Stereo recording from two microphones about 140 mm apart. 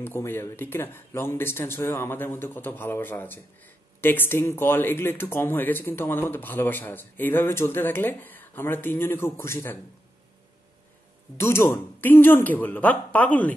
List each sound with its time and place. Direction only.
0.0 s a man's voice: 15° left (ahead or behind)
11.3 s a man's voice: 20° left (ahead or behind)